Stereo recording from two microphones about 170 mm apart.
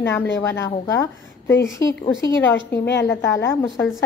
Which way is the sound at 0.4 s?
15° left (ahead or behind).